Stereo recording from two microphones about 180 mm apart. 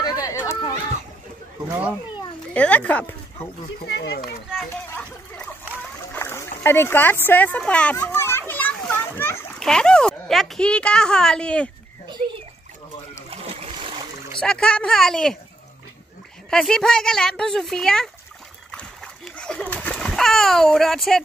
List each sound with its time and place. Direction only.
0.0 s chatter: 20° left (ahead or behind)
2.5 s speech: 5° left (ahead or behind)
3.8 s speech: 70° left (ahead or behind)
6.1 s speech: 15° left (ahead or behind)
13.3 s splash: 30° right (ahead or behind)
14.4 s speech: 5° left (ahead or behind)
16.4 s speech: 5° left (ahead or behind)
18.7 s splash: 5° left (ahead or behind)